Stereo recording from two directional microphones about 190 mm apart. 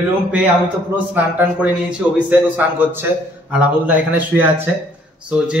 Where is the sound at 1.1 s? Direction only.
10° right (ahead or behind).